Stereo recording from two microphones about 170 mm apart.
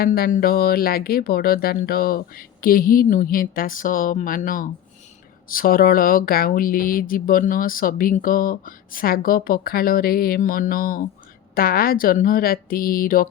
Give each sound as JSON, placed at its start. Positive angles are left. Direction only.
{"t": 0.0, "sound": "speech", "side_deg": 60}